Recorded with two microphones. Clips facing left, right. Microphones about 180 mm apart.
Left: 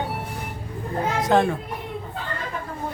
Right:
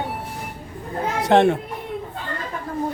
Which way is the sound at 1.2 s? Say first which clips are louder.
Right 4 dB; 70° right (ahead or behind).